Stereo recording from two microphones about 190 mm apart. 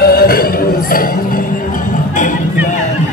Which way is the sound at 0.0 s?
55° left (ahead or behind).